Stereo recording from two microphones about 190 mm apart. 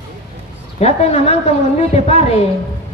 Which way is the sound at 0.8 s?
35° left (ahead or behind).